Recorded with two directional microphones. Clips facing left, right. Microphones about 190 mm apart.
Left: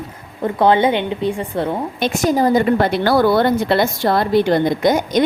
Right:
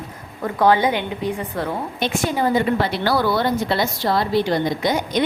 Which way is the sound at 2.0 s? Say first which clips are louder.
Left 5 dB; 40° left (ahead or behind).